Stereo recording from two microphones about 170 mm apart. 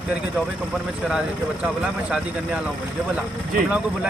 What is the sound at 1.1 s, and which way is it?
Speech, 5° right (ahead or behind).